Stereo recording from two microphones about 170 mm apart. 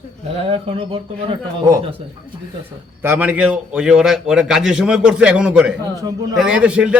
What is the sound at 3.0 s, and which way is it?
A man's voice, 10° right (ahead or behind).